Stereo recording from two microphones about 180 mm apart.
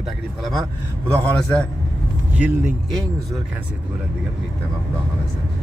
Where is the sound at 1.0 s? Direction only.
5° left (ahead or behind).